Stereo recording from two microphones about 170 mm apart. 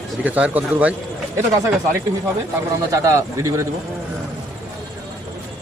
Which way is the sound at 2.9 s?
20° right (ahead or behind).